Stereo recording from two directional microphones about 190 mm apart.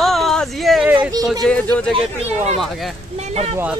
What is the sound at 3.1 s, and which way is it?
Speech, 35° right (ahead or behind).